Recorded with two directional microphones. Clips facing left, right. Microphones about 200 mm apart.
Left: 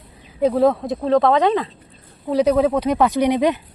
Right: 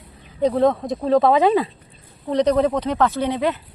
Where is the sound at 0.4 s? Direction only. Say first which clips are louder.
Left 1 dB; 5° left (ahead or behind).